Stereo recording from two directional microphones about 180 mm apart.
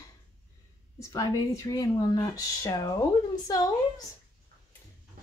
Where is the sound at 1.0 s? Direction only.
15° left (ahead or behind).